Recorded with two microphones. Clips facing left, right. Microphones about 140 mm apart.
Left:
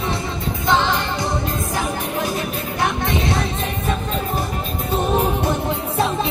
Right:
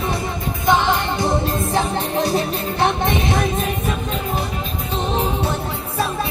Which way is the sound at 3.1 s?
20° right (ahead or behind).